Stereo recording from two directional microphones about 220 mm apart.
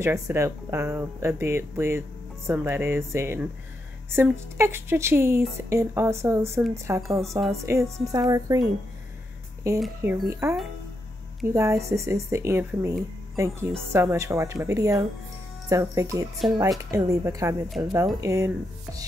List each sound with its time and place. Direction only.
0.0 s speech: 10° right (ahead or behind)
7.1 s a woman's voice: centre (ahead or behind)
7.6 s speech: 15° right (ahead or behind)
9.6 s speech: 15° right (ahead or behind)